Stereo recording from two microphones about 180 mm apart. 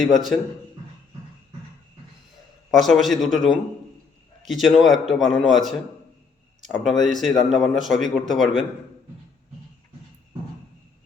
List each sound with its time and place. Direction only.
0.0 s speech: centre (ahead or behind)
2.6 s speech: centre (ahead or behind)
6.8 s speech: centre (ahead or behind)